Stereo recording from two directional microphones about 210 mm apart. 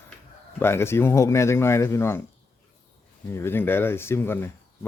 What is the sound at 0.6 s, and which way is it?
Speech, 10° left (ahead or behind).